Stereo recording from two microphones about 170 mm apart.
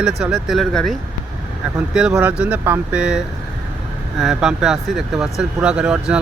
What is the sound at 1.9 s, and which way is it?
Speech, 5° right (ahead or behind).